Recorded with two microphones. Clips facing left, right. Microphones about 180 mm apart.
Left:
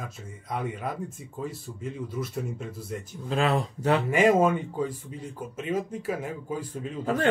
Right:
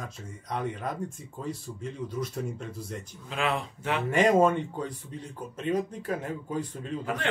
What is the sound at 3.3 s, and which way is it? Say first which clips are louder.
Speech: left 5 dB; 40° left (ahead or behind).